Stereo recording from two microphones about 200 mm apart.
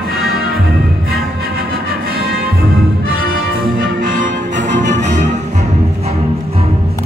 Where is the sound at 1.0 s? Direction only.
50° right (ahead or behind).